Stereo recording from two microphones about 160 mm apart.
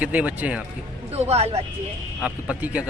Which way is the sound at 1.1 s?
40° right (ahead or behind).